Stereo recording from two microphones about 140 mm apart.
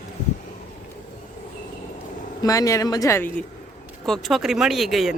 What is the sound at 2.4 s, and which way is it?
Speech, 25° left (ahead or behind).